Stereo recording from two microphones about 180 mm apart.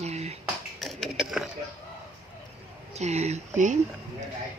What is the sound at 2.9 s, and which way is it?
Speech, 40° right (ahead or behind).